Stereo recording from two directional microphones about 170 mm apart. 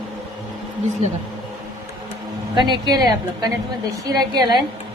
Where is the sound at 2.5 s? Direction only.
25° right (ahead or behind).